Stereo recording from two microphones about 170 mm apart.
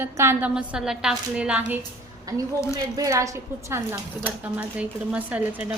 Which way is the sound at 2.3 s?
20° right (ahead or behind).